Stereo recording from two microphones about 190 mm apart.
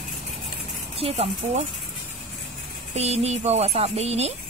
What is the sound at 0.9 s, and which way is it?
Speech, 30° right (ahead or behind).